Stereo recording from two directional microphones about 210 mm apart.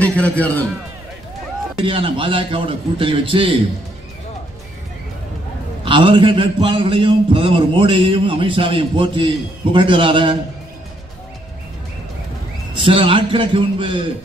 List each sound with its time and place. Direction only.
0.0 s a man's voice: 5° left (ahead or behind)
1.8 s a man's voice: 25° right (ahead or behind)
5.9 s a man's voice: 25° right (ahead or behind)
12.7 s a man's voice: 25° right (ahead or behind)